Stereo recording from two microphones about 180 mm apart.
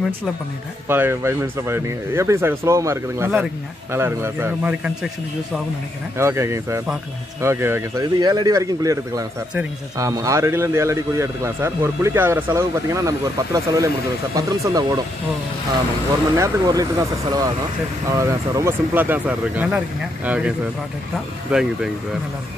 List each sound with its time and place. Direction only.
0.8 s a man's voice: 10° right (ahead or behind)
16.3 s a man's voice: 20° right (ahead or behind); by 21.9 s 5° right (ahead or behind)